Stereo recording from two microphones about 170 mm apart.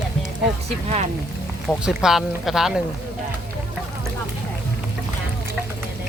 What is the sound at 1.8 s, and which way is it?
Speech, 5° right (ahead or behind).